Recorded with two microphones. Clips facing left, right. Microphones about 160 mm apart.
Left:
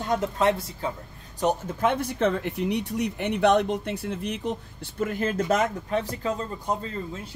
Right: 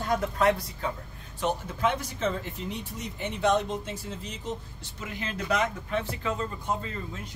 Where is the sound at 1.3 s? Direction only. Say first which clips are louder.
Left 5 dB; 40° left (ahead or behind).